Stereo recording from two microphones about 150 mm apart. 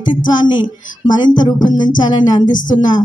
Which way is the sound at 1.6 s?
30° left (ahead or behind).